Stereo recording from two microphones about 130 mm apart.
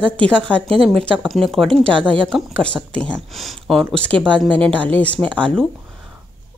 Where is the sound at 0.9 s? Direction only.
10° left (ahead or behind).